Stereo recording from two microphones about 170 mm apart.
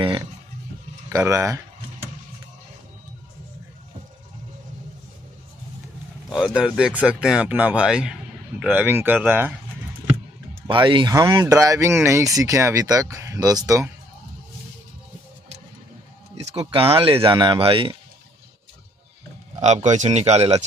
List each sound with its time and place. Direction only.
1.1 s speech: 15° right (ahead or behind)
6.3 s speech: 5° right (ahead or behind)
10.7 s speech: 30° right (ahead or behind)
16.5 s speech: 30° right (ahead or behind)
19.6 s speech: 40° right (ahead or behind)